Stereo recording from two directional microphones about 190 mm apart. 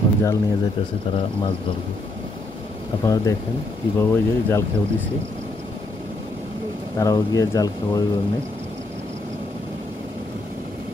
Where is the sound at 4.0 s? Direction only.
10° left (ahead or behind).